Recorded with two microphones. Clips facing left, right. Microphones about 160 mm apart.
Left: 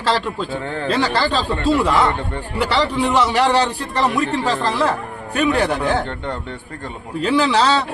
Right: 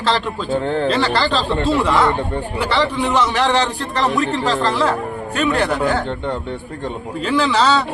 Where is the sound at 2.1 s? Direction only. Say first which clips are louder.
Right 4 dB; 15° right (ahead or behind).